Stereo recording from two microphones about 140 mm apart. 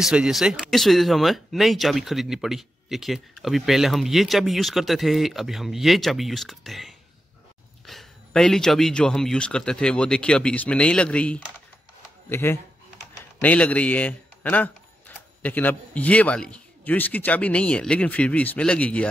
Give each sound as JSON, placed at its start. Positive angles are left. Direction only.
{"t": 0.0, "sound": "speech", "side_deg": -5}